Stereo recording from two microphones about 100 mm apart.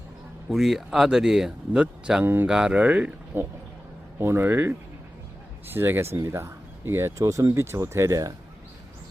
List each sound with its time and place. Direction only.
0.5 s speech: 5° right (ahead or behind)
2.2 s speech: 20° right (ahead or behind)
2.5 s speech: 10° right (ahead or behind); by 8.3 s 30° right (ahead or behind)